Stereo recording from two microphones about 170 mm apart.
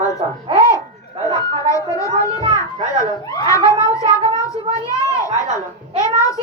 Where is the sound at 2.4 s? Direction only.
25° right (ahead or behind).